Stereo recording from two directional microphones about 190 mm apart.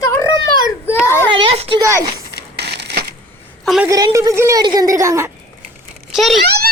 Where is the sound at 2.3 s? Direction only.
60° right (ahead or behind).